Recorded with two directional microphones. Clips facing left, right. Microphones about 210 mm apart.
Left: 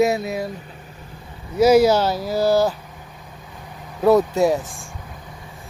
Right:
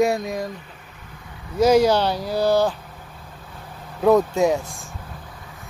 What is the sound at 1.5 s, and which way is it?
Speech, 10° left (ahead or behind).